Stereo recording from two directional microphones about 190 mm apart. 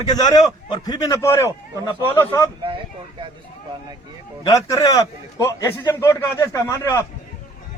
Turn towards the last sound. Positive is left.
turn(degrees=15)  # may be behind; listen again after turning